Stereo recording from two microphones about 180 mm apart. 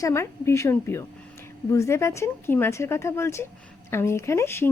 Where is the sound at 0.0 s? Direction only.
15° left (ahead or behind).